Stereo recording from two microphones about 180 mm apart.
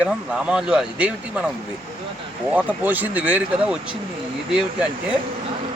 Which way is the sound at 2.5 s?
10° right (ahead or behind).